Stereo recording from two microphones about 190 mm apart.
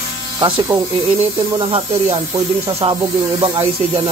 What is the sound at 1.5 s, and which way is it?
Speech, 30° right (ahead or behind).